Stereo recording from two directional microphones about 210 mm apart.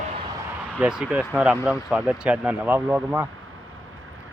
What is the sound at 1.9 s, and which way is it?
Speech, 5° right (ahead or behind).